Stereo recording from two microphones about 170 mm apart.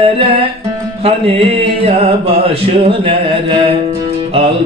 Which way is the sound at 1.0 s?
35° right (ahead or behind).